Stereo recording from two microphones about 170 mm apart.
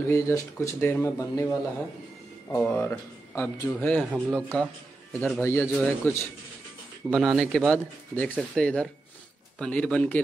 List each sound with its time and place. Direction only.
0.1 s speech: 20° left (ahead or behind)
4.1 s speech: 5° left (ahead or behind)